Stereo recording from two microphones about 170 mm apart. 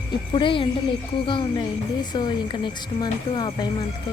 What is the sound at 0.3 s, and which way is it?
Speech, 30° left (ahead or behind).